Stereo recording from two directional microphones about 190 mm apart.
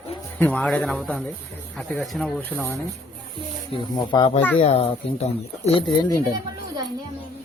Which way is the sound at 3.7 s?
30° left (ahead or behind).